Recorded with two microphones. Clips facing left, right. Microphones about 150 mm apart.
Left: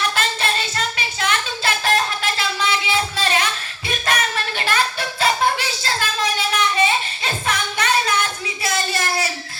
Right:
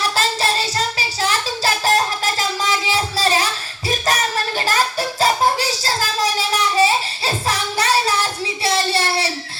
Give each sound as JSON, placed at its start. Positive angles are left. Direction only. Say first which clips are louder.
{"t": 0.0, "sound": "child singing", "louder": "right 2 dB", "side_deg": -35}